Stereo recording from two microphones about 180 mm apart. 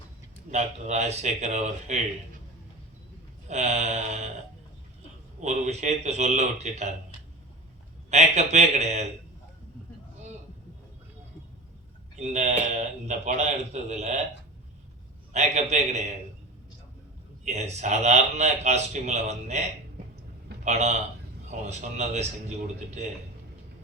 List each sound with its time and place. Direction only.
0.5 s speech: 40° right (ahead or behind)
3.5 s speech: 40° right (ahead or behind)
5.4 s speech: 40° right (ahead or behind)
8.1 s speech: 40° right (ahead or behind)
12.1 s speech: 40° right (ahead or behind)
15.3 s speech: 40° right (ahead or behind)
17.4 s speech: 40° right (ahead or behind)
20.7 s speech: 40° right (ahead or behind)